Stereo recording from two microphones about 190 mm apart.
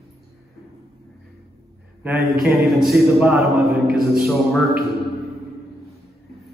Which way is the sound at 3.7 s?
55° right (ahead or behind).